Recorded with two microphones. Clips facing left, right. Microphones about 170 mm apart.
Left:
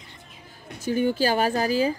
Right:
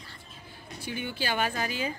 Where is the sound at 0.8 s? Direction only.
40° left (ahead or behind).